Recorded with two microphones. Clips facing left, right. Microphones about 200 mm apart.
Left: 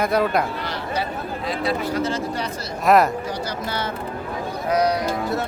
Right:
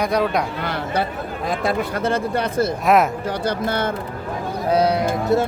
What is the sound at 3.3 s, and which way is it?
Speech, 55° right (ahead or behind).